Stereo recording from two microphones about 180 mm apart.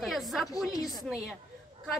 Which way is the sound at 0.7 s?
20° left (ahead or behind).